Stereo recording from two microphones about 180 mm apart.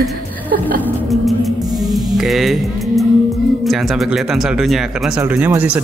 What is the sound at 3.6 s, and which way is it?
Speech, centre (ahead or behind).